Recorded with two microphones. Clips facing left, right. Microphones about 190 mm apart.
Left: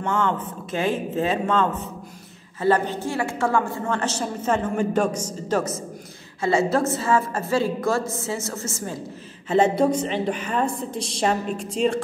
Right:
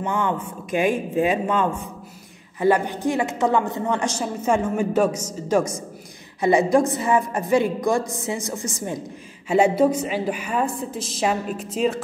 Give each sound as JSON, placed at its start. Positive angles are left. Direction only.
{"t": 0.0, "sound": "a woman's voice", "side_deg": -15}